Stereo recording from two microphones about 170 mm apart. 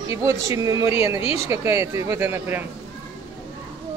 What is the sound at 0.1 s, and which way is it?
Speech, 20° right (ahead or behind).